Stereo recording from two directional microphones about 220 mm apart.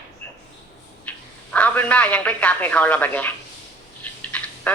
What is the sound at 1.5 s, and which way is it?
Speech, 5° left (ahead or behind).